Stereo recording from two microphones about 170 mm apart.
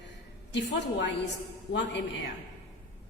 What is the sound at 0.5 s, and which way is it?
Speech, 90° left.